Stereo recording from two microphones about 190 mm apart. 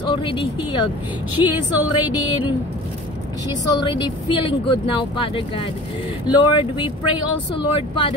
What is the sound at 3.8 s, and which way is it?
Speech, 20° left (ahead or behind).